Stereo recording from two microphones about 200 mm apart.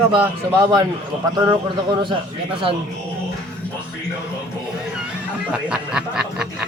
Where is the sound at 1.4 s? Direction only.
20° right (ahead or behind).